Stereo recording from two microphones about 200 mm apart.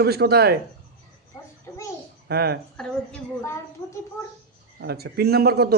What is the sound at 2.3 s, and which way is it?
Speech, 50° right (ahead or behind).